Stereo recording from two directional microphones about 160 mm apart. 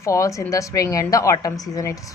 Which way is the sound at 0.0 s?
20° left (ahead or behind).